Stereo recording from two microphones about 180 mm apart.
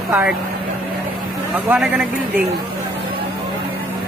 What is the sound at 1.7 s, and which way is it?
Speech, 10° right (ahead or behind).